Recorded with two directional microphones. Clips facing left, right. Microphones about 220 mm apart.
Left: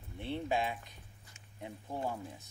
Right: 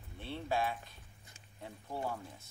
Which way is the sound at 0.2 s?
15° left (ahead or behind).